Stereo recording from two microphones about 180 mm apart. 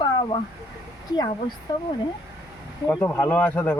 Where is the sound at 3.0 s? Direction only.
10° left (ahead or behind).